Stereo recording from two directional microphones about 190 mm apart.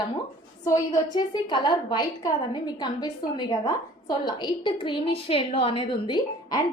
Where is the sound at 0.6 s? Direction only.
15° left (ahead or behind).